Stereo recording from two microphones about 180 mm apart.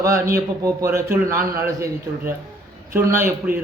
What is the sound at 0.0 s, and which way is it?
A man's voice, 15° right (ahead or behind).